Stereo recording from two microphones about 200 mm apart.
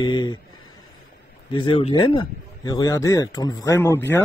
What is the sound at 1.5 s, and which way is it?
Speech, 25° left (ahead or behind).